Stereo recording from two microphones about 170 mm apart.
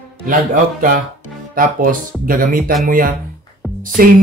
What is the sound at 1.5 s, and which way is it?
Speech, 55° right (ahead or behind).